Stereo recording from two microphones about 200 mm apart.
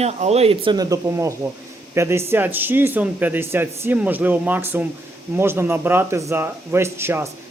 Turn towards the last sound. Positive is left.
turn(degrees=-10)  # may be behind; listen again after turning